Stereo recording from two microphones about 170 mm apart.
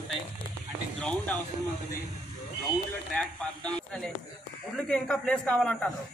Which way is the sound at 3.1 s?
5° left (ahead or behind).